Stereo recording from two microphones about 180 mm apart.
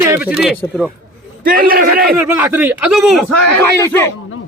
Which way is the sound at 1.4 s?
55° right (ahead or behind).